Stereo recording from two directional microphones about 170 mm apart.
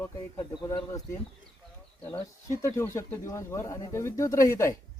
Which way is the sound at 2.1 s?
15° left (ahead or behind).